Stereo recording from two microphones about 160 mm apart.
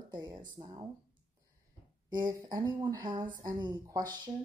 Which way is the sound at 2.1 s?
25° right (ahead or behind).